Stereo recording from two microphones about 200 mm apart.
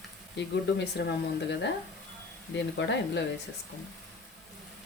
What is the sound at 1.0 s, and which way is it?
Speech, 55° left (ahead or behind).